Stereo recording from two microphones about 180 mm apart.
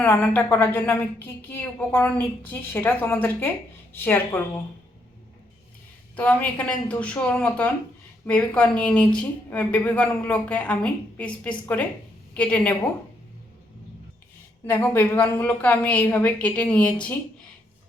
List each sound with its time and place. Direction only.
0.0 s speech: 10° left (ahead or behind)
6.1 s speech: 10° left (ahead or behind)
14.7 s speech: 10° left (ahead or behind)